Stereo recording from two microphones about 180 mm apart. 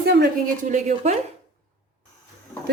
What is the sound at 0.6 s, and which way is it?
Speech, 45° right (ahead or behind).